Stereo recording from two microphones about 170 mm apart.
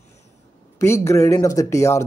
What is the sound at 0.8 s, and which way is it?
Speech, 15° left (ahead or behind).